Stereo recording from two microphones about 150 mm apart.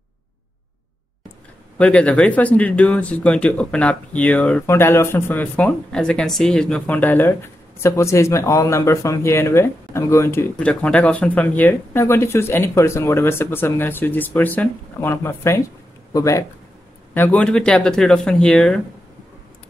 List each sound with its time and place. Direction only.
1.8 s speech: 10° left (ahead or behind)
17.1 s speech: 10° left (ahead or behind)